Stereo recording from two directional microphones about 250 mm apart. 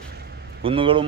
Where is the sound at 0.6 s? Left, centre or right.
Right.